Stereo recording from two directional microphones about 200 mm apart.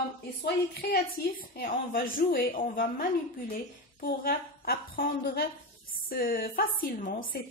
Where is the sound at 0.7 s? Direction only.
50° left (ahead or behind).